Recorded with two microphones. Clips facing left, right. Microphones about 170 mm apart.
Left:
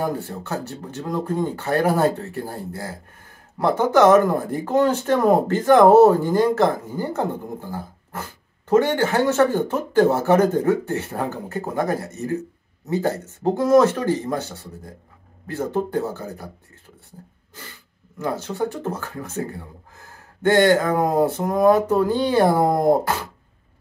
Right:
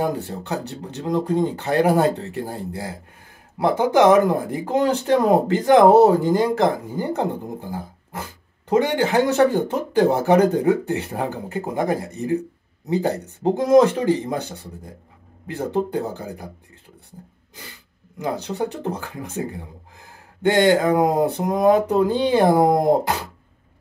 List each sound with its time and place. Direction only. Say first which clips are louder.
0.0 s speech: right 1 dB; 15° right (ahead or behind)
8.6 s speech: left 1 dB; 15° right (ahead or behind)
18.2 s speech: even; 15° right (ahead or behind)